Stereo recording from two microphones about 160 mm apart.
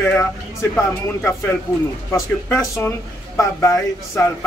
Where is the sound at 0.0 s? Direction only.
15° left (ahead or behind).